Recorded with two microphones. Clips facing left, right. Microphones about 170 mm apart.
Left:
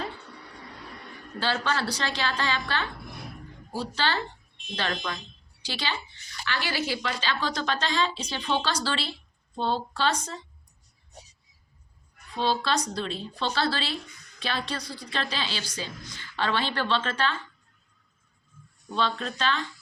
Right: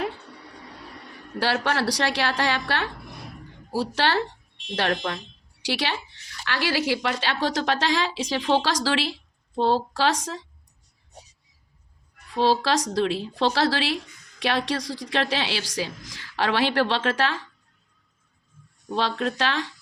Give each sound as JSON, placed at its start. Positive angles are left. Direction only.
{"t": 1.4, "sound": "a woman's voice", "side_deg": -75}
{"t": 4.8, "sound": "speech", "side_deg": -65}
{"t": 5.6, "sound": "a woman's voice", "side_deg": -75}
{"t": 12.4, "sound": "a woman's voice", "side_deg": -90}
{"t": 18.9, "sound": "speech", "side_deg": -90}